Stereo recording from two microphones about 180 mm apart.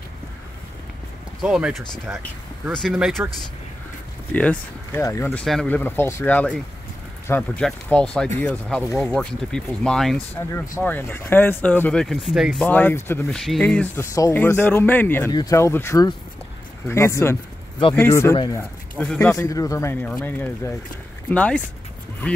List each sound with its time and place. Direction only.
1.4 s speech: 5° right (ahead or behind)
4.3 s speech: 10° left (ahead or behind)
12.6 s speech: 10° left (ahead or behind)